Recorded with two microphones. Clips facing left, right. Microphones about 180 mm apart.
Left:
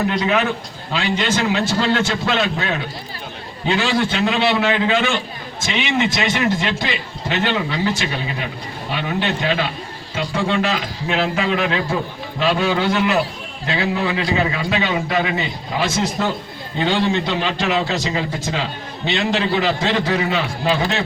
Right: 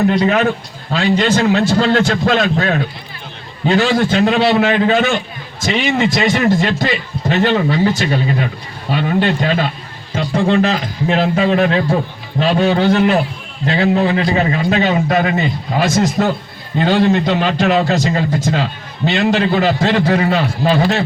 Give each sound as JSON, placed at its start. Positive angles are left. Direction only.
{"t": 0.9, "sound": "a man's voice", "side_deg": -45}